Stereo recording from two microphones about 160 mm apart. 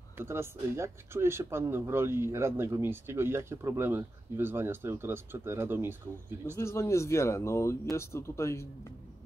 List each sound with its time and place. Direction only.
0.2 s speech: 15° right (ahead or behind)
6.5 s speech: 15° left (ahead or behind)